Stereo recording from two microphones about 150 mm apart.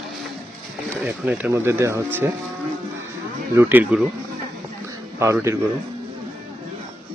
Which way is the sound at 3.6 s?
15° right (ahead or behind).